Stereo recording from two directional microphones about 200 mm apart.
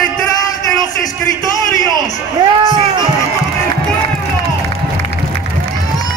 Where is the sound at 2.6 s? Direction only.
20° right (ahead or behind).